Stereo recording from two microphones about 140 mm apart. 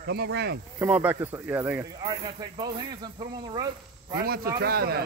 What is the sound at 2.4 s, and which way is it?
Speech, 30° right (ahead or behind).